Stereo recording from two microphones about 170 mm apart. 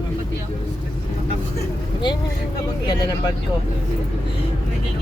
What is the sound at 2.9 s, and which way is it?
Speech, 25° left (ahead or behind).